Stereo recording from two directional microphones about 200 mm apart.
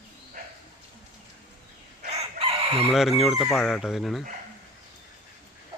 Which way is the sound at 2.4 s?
35° right (ahead or behind).